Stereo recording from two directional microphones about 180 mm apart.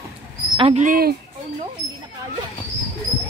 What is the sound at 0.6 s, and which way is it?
Speech, 30° right (ahead or behind).